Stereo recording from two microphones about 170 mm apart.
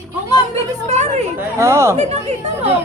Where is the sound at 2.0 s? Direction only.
40° right (ahead or behind).